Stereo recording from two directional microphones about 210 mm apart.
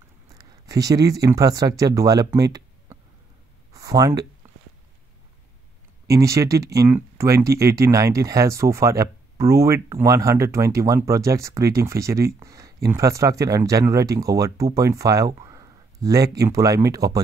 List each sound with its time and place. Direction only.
0.3 s speech: 15° right (ahead or behind)
3.7 s a sound: 15° right (ahead or behind)
6.0 s speech: 15° right (ahead or behind)